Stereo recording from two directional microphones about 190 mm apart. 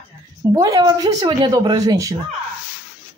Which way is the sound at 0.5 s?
20° right (ahead or behind).